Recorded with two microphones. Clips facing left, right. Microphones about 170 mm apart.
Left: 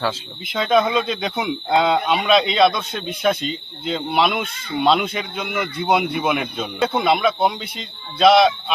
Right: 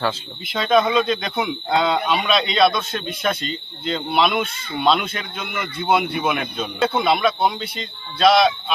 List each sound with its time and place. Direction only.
0.0 s speech: 10° left (ahead or behind)
8.2 s speech: 20° left (ahead or behind)